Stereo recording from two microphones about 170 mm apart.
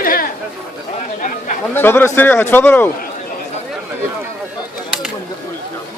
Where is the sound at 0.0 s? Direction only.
55° left (ahead or behind).